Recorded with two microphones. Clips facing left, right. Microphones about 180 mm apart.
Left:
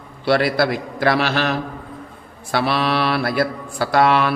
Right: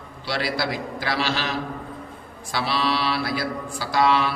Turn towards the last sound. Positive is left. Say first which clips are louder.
# left 5 dB
turn(degrees=60)  # may be behind; listen again after turning